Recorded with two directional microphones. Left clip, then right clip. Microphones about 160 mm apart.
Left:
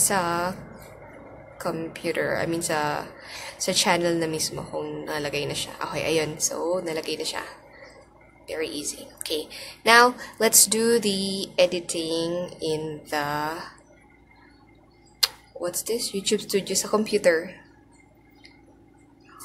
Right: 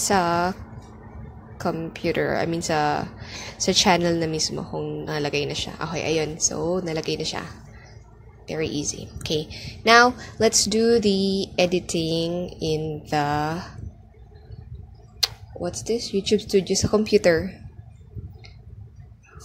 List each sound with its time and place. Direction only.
0.0 s a woman's voice: 45° right (ahead or behind)
1.6 s a woman's voice: 45° right (ahead or behind)
15.1 s speech: 35° right (ahead or behind)